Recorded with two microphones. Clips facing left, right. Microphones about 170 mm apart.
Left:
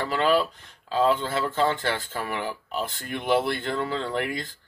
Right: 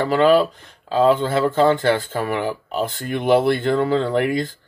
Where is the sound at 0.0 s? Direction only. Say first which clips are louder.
Right 8 dB; 55° right (ahead or behind).